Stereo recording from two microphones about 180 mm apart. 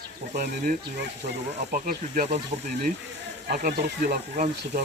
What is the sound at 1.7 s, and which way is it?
Speech, 50° right (ahead or behind).